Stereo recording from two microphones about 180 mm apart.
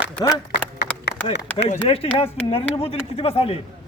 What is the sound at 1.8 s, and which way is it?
A man's voice, 35° left (ahead or behind).